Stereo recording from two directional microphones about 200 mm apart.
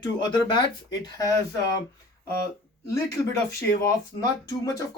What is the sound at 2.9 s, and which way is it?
Speech, 15° left (ahead or behind).